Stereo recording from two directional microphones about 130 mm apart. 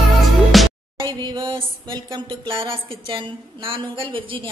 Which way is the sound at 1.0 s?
35° right (ahead or behind).